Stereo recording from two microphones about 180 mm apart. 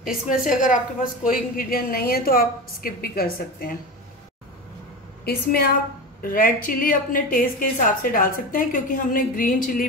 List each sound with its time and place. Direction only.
0.0 s a woman's voice: 50° left (ahead or behind)
5.2 s a woman's voice: 55° left (ahead or behind)